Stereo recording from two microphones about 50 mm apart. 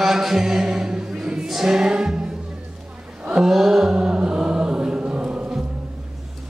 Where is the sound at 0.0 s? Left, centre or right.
Centre.